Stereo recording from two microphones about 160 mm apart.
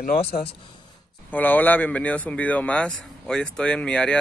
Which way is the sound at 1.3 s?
10° left (ahead or behind).